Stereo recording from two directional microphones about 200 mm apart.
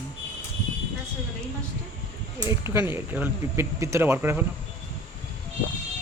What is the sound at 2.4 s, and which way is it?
Speech, 15° right (ahead or behind).